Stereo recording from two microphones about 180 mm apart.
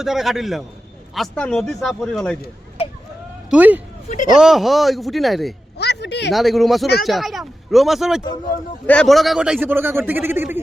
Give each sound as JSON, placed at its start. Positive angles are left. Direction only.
{"t": 0.0, "sound": "speech", "side_deg": 0}
{"t": 3.5, "sound": "a man's voice", "side_deg": -10}
{"t": 4.1, "sound": "speech", "side_deg": 45}
{"t": 4.4, "sound": "speech", "side_deg": 0}
{"t": 5.7, "sound": "speech", "side_deg": 70}
{"t": 6.3, "sound": "a man's voice", "side_deg": 0}